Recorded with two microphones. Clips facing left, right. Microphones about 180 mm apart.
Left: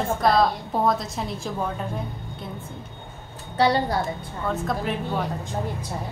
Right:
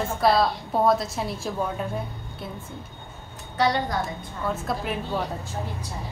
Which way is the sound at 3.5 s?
30° left (ahead or behind).